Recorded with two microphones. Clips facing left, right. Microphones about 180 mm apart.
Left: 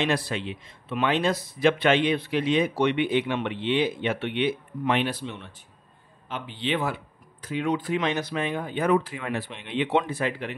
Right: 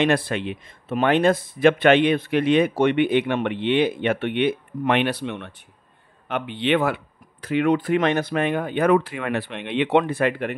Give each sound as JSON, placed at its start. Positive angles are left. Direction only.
{"t": 0.0, "sound": "speech", "side_deg": -55}